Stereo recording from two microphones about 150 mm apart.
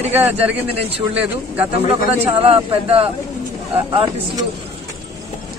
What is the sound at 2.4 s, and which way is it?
Speech, 40° right (ahead or behind).